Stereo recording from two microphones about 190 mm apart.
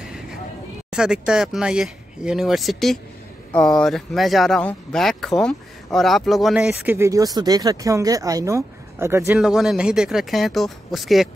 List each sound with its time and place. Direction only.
0.8 s speech: 5° right (ahead or behind)
7.0 s speech: 15° right (ahead or behind)
9.4 s speech: centre (ahead or behind)